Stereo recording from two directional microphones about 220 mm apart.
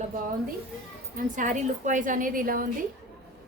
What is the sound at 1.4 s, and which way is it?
A woman's voice, 35° right (ahead or behind).